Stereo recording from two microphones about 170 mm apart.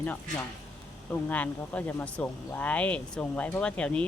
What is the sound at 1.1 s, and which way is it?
Speech, 10° left (ahead or behind).